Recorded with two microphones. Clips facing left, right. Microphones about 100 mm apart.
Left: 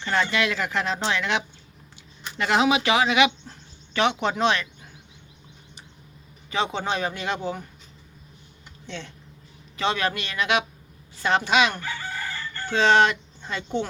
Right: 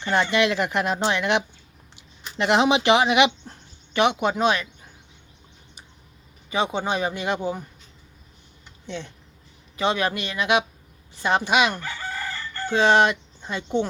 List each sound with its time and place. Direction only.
0.0 s speech: 20° right (ahead or behind)
6.5 s speech: 15° right (ahead or behind)
8.9 s speech: 15° right (ahead or behind)